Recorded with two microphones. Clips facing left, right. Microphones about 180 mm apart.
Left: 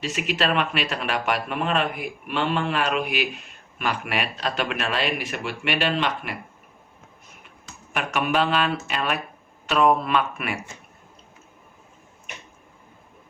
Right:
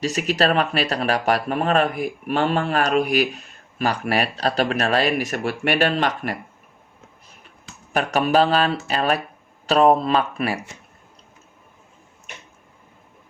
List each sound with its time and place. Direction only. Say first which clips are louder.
0.0 s speech: right 5 dB; 40° right (ahead or behind)
7.9 s speech: right 5 dB; 35° right (ahead or behind)